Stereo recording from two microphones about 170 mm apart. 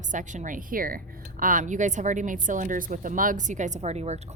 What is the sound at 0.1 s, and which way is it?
A woman's voice, 50° right (ahead or behind).